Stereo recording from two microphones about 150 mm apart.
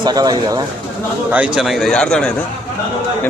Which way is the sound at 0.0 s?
25° right (ahead or behind).